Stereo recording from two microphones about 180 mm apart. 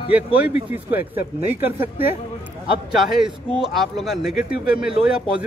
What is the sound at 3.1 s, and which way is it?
Speech, 5° right (ahead or behind).